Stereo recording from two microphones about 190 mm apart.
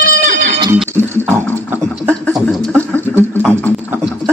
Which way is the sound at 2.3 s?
5° left (ahead or behind).